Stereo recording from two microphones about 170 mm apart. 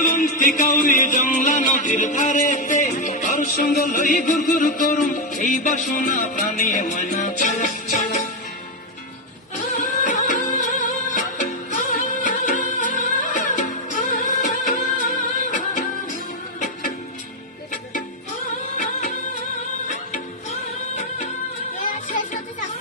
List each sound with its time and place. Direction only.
0.0 s music: 50° left (ahead or behind)
9.6 s music: 50° left (ahead or behind)
18.8 s music: 50° left (ahead or behind)